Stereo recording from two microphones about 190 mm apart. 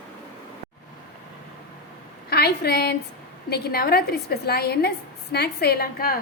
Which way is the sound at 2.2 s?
55° left (ahead or behind).